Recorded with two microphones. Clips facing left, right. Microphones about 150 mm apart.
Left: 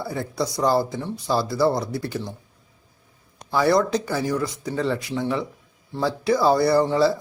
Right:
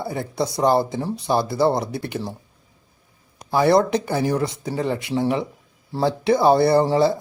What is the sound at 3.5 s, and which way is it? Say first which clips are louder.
Speech: right 3 dB; 25° right (ahead or behind).